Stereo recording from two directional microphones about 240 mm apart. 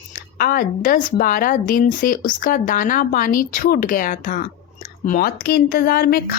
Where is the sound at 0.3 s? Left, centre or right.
Left.